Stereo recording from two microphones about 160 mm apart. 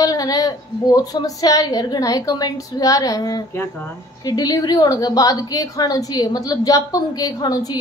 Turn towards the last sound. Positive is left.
turn(degrees=25)  # may be behind; listen again after turning